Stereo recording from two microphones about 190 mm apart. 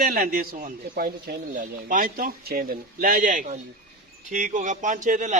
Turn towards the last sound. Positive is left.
turn(degrees=-40)  # may be behind; listen again after turning